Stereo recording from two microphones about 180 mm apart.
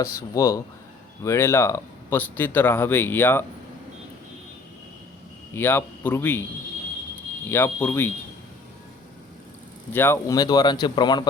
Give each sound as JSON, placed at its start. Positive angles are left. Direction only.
{"t": 0.3, "sound": "speech", "side_deg": 15}
{"t": 5.5, "sound": "speech", "side_deg": 10}
{"t": 7.5, "sound": "speech", "side_deg": 10}
{"t": 9.9, "sound": "speech", "side_deg": 10}